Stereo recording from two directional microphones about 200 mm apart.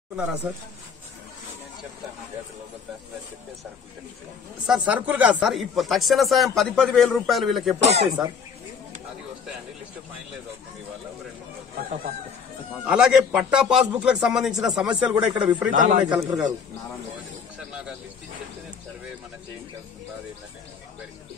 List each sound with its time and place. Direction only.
0.1 s speech: 5° right (ahead or behind)
4.6 s speech: 5° right (ahead or behind)
7.8 s speech: 30° right (ahead or behind)
12.8 s speech: 5° right (ahead or behind)
15.7 s speech: 40° right (ahead or behind)
16.1 s a man's voice: 15° right (ahead or behind)